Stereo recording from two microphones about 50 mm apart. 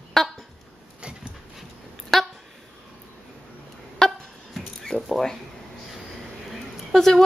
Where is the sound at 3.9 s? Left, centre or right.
Centre.